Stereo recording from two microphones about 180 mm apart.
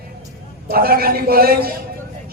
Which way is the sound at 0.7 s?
55° right (ahead or behind).